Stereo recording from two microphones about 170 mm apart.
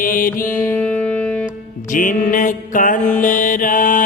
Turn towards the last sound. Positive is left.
turn(degrees=50)  # may be behind; listen again after turning